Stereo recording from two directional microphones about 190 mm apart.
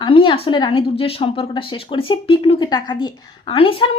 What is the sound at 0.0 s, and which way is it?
A woman's voice, 25° left (ahead or behind).